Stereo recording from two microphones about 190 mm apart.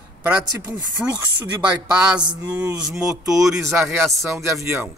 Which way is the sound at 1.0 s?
Centre (ahead or behind).